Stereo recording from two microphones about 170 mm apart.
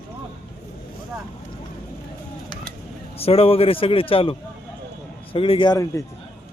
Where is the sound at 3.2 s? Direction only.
35° left (ahead or behind).